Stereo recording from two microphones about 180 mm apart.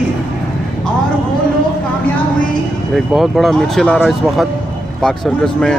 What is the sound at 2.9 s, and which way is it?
Speech, centre (ahead or behind).